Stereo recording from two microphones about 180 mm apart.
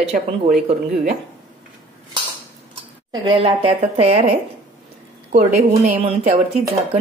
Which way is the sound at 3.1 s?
25° right (ahead or behind).